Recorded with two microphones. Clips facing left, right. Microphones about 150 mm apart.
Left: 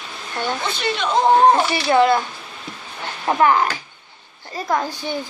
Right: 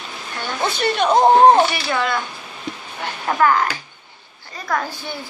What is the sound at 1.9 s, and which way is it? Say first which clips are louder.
Speech: left 7 dB; 30° left (ahead or behind).